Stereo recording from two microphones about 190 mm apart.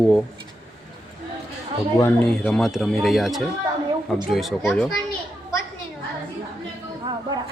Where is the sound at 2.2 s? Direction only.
5° left (ahead or behind).